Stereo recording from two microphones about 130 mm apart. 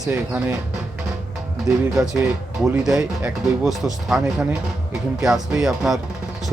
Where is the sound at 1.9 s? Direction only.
5° right (ahead or behind).